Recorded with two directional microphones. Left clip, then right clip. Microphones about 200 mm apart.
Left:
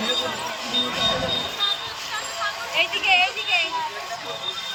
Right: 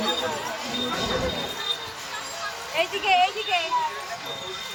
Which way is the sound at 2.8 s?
35° right (ahead or behind).